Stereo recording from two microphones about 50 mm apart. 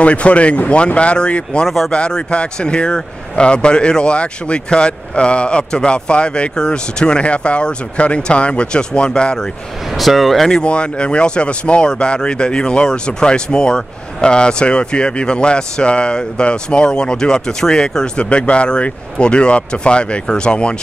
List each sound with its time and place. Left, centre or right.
0.0 s speech: left
9.9 s speech: centre
10.6 s speech: left